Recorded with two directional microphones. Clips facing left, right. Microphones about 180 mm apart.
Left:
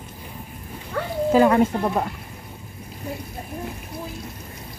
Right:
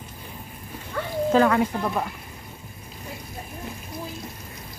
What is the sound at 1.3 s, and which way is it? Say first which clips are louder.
Speech: left 3 dB; 20° left (ahead or behind).